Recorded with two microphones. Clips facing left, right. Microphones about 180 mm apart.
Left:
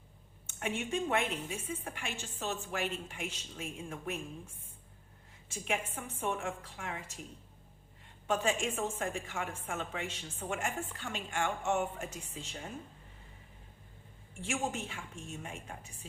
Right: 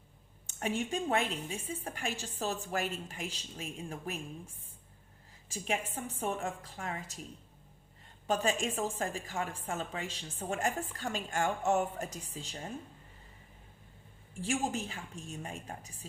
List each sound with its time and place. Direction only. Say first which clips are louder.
0.4 s a woman's voice: right 3 dB; 35° right (ahead or behind)
5.5 s a woman's voice: right 1 dB; 35° right (ahead or behind)
8.3 s a woman's voice: right 1 dB; 35° right (ahead or behind)
14.4 s a woman's voice: right 2 dB; 35° right (ahead or behind)